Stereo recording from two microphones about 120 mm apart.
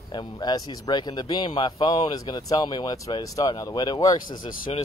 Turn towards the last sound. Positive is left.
turn(degrees=35)  # may be behind; listen again after turning